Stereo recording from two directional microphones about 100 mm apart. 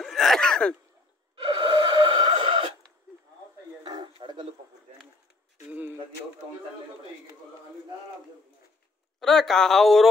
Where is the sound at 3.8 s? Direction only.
50° right (ahead or behind).